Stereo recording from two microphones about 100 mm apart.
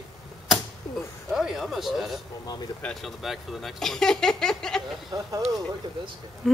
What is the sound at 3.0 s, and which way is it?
Speech, centre (ahead or behind).